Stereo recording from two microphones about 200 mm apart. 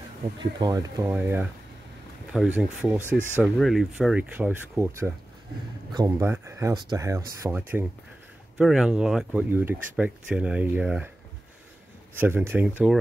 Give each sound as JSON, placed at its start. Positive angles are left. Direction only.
{"t": 0.4, "sound": "speech", "side_deg": -20}
{"t": 12.2, "sound": "speech", "side_deg": -10}